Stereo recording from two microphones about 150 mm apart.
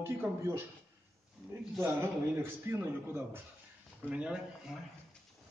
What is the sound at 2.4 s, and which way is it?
A man's voice, 15° right (ahead or behind).